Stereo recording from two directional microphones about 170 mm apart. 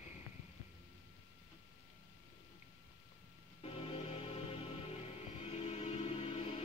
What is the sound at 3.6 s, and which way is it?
Music, 35° left (ahead or behind).